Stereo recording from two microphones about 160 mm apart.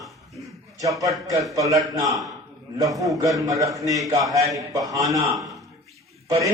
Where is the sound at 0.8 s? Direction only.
20° right (ahead or behind).